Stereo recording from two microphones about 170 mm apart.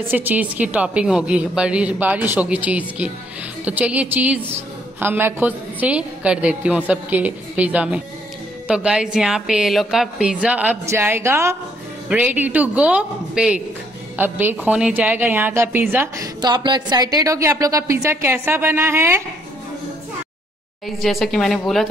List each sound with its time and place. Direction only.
0.1 s a woman's voice: 10° right (ahead or behind)
16.3 s a woman's voice: 25° right (ahead or behind)
21.0 s a woman's voice: centre (ahead or behind)